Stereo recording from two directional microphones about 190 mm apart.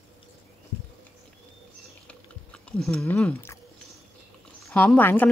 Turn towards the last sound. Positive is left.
turn(degrees=10)  # may be behind; listen again after turning